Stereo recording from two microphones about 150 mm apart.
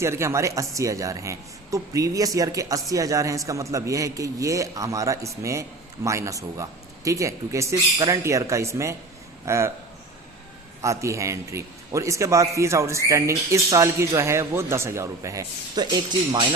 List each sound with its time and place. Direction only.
0.0 s a man's voice: 20° right (ahead or behind)
10.8 s a man's voice: 20° right (ahead or behind)